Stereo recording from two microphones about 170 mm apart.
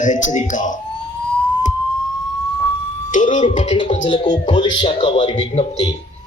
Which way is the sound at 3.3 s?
40° left (ahead or behind).